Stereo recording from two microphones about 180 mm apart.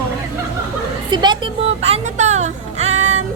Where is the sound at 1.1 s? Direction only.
25° right (ahead or behind).